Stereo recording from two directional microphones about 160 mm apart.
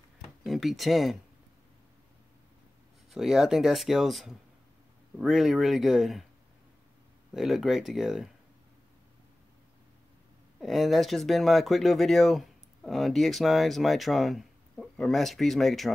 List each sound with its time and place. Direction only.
0.4 s speech: centre (ahead or behind)
3.1 s speech: 5° right (ahead or behind)
7.3 s speech: centre (ahead or behind)
10.6 s speech: centre (ahead or behind)